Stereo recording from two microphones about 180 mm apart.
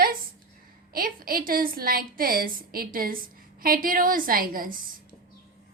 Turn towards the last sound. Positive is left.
turn(degrees=-50)  # may be behind; listen again after turning